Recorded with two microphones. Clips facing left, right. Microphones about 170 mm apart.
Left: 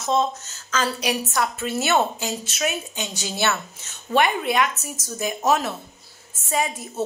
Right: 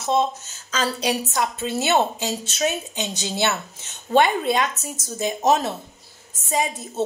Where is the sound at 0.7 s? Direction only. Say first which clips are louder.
Right 1 dB; 25° right (ahead or behind).